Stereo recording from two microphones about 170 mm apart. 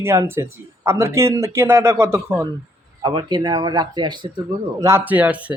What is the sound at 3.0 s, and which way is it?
Speech, 25° right (ahead or behind).